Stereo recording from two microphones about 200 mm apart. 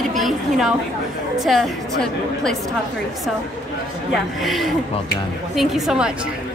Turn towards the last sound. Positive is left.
turn(degrees=-5)  # may be behind; listen again after turning